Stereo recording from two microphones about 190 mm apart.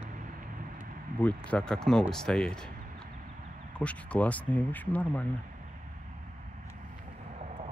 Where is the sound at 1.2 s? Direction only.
5° left (ahead or behind).